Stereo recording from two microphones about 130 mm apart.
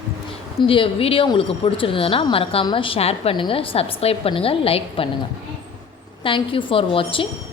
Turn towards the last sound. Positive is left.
turn(degrees=45)  # may be behind; listen again after turning